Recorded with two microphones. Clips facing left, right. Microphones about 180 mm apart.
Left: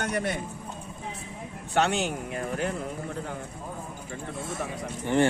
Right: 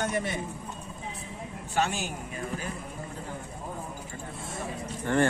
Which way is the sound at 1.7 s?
70° left (ahead or behind).